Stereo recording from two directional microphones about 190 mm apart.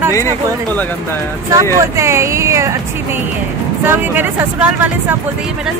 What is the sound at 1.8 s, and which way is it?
Speech, 15° right (ahead or behind).